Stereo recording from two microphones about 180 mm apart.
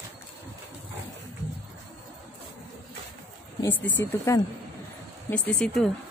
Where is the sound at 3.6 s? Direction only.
10° left (ahead or behind).